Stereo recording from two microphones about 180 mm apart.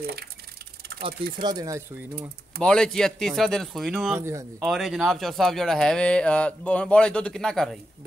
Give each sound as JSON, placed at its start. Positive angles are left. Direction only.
{"t": 1.4, "sound": "speech", "side_deg": -20}
{"t": 2.6, "sound": "speech", "side_deg": 5}
{"t": 4.2, "sound": "speech", "side_deg": -15}
{"t": 4.6, "sound": "speech", "side_deg": 0}